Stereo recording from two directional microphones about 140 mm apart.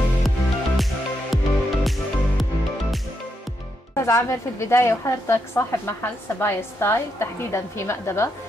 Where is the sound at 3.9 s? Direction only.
20° left (ahead or behind).